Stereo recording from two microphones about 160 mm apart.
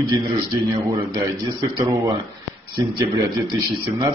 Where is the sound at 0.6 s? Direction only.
20° right (ahead or behind).